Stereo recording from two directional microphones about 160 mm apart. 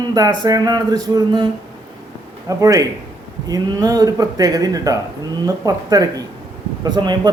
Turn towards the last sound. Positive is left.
turn(degrees=-25)  # may be behind; listen again after turning